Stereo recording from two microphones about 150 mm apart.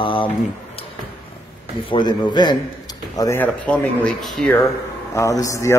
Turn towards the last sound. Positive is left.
turn(degrees=20)  # may be behind; listen again after turning